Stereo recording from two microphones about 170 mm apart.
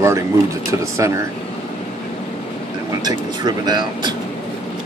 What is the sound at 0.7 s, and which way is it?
Speech, 15° right (ahead or behind).